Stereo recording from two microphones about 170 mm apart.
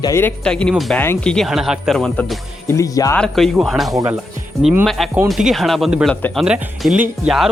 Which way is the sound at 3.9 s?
20° right (ahead or behind).